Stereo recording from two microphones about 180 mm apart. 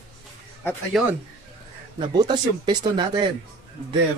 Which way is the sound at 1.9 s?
25° right (ahead or behind).